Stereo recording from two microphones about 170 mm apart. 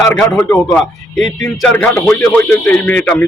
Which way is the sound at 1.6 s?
10° left (ahead or behind).